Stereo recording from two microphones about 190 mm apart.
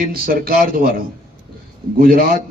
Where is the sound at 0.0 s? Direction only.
50° right (ahead or behind).